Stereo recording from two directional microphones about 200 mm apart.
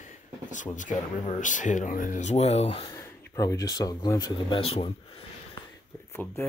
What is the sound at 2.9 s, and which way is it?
Speech, 15° left (ahead or behind).